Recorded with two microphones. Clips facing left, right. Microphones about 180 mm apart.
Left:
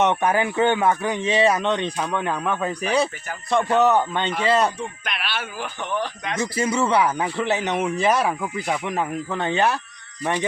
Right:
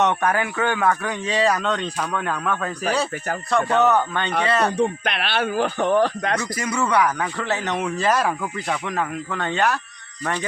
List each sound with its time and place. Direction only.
0.0 s speech: 20° left (ahead or behind)
4.8 s speech: 65° right (ahead or behind)
6.4 s speech: 25° left (ahead or behind)